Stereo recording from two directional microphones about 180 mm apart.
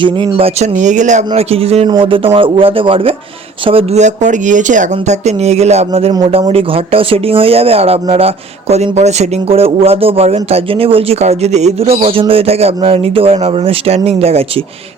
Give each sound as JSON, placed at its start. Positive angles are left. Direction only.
{"t": 0.0, "sound": "speech", "side_deg": -30}